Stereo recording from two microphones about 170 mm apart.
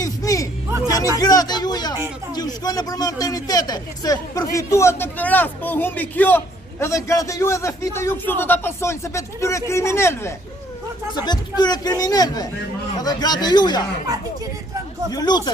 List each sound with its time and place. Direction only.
0.0 s a sound: 20° left (ahead or behind)
0.8 s speech: 20° left (ahead or behind)
15.0 s speech: 25° left (ahead or behind)